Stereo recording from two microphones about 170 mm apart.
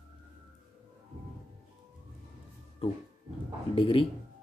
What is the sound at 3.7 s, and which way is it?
Speech, 30° left (ahead or behind).